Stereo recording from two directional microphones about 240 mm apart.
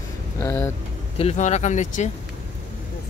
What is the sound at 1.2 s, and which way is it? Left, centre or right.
Speech, left.